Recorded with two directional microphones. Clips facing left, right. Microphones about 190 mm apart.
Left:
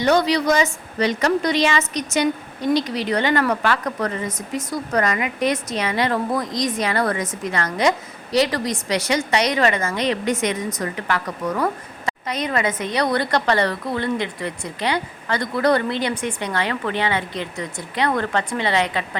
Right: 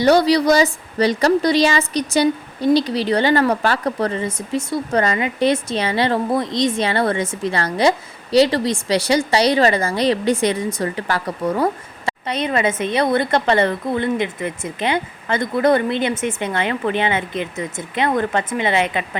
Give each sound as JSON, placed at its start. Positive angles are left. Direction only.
{"t": 0.0, "sound": "a woman's voice", "side_deg": -35}